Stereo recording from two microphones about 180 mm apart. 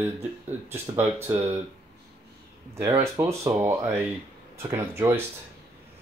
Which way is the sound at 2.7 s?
15° right (ahead or behind).